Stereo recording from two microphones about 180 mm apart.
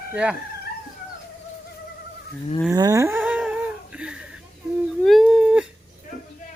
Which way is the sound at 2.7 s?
20° right (ahead or behind).